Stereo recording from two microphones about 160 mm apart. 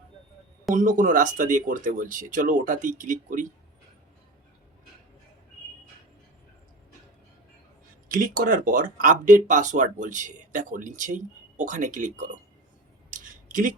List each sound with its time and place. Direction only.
0.7 s speech: 55° right (ahead or behind)
8.0 s speech: 60° right (ahead or behind)
13.5 s speech: 55° right (ahead or behind)